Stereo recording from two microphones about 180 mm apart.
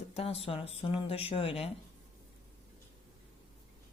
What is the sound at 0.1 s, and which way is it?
Speech, 35° left (ahead or behind).